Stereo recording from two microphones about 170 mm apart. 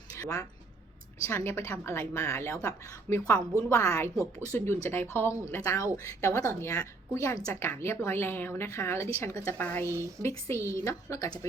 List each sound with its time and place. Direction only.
0.2 s a woman's voice: 20° left (ahead or behind)
9.9 s speech: 15° right (ahead or behind)
10.5 s a woman's voice: 20° left (ahead or behind)